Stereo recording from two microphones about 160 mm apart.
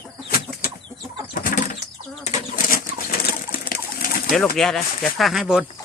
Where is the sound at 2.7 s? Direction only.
65° left (ahead or behind).